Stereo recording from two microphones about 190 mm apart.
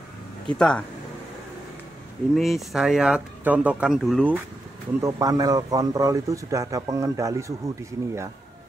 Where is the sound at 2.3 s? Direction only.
Centre (ahead or behind).